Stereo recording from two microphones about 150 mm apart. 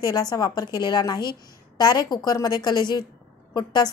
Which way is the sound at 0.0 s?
25° left (ahead or behind).